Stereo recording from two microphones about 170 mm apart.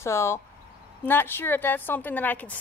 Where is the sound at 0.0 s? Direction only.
15° left (ahead or behind).